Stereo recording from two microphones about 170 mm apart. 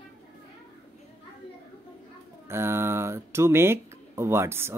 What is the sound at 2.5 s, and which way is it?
Speech, 15° right (ahead or behind).